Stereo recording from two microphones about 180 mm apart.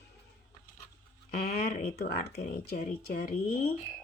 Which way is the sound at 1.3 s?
55° left (ahead or behind).